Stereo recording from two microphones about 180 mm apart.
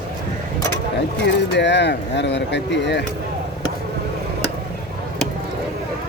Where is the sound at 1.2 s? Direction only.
75° left (ahead or behind).